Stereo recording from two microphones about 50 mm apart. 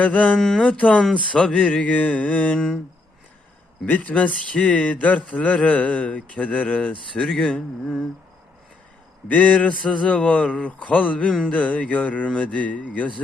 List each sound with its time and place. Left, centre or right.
0.0 s speech: left
0.3 s speech: centre
0.7 s speech: left
1.7 s speech: left
2.6 s speech: centre
3.8 s speech: left
7.3 s speech: centre
9.3 s speech: left
11.3 s speech: centre
11.6 s speech: left